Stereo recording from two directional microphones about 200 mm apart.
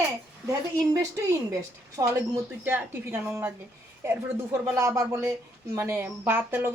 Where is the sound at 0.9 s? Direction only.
15° right (ahead or behind).